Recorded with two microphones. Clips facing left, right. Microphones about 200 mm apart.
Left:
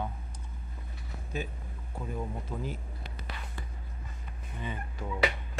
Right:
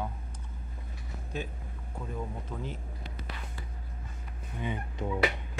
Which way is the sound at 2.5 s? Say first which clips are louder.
Left 2 dB; 10° left (ahead or behind).